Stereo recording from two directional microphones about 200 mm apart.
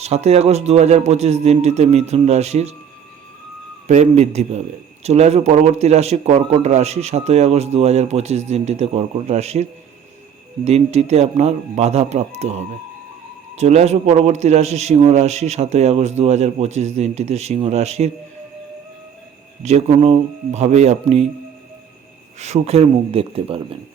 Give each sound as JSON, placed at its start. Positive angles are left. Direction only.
{"t": 0.0, "sound": "speech", "side_deg": -30}
{"t": 3.8, "sound": "speech", "side_deg": -35}
{"t": 10.7, "sound": "speech", "side_deg": -30}
{"t": 19.6, "sound": "speech", "side_deg": -30}
{"t": 22.4, "sound": "speech", "side_deg": -35}